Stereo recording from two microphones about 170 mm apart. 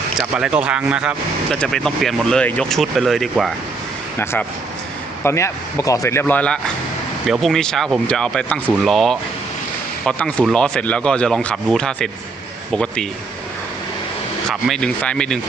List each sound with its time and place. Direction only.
0.2 s speech: 5° right (ahead or behind)
4.2 s speech: 15° left (ahead or behind)
14.5 s speech: 5° left (ahead or behind)